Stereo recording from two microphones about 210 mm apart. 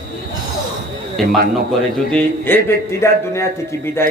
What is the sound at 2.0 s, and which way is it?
A man's voice, 5° left (ahead or behind).